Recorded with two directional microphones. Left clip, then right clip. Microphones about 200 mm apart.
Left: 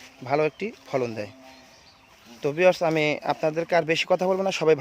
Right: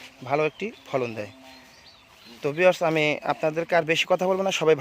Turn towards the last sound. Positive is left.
turn(degrees=5)  # may be behind; listen again after turning